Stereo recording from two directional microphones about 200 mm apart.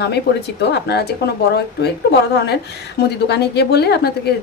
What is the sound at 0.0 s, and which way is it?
A woman's voice, 55° left (ahead or behind).